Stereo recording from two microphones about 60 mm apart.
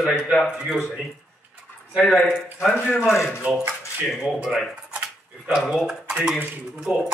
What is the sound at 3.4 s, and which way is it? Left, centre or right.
Speech, right.